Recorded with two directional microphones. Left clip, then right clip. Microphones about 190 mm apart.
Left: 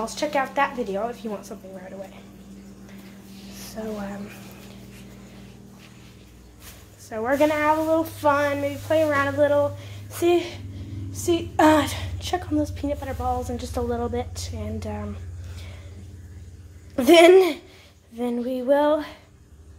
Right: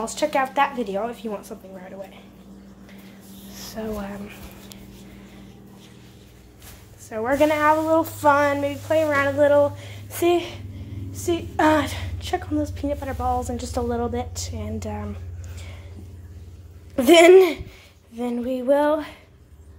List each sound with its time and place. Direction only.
0.0 s a woman's voice: 10° right (ahead or behind)
3.5 s speech: 15° right (ahead or behind)
7.1 s a woman's voice: 5° right (ahead or behind)
7.9 s female singing: 20° right (ahead or behind)
8.8 s speech: 5° right (ahead or behind)
9.5 s a sound: 20° right (ahead or behind)
11.1 s a woman's voice: centre (ahead or behind)
16.9 s a woman's voice: 10° right (ahead or behind)